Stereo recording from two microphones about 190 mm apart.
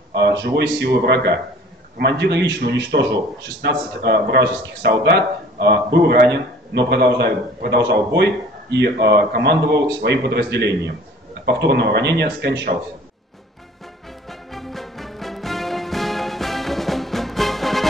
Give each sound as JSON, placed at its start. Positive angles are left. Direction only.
{"t": 0.1, "sound": "a man's voice", "side_deg": -65}
{"t": 14.5, "sound": "music", "side_deg": 0}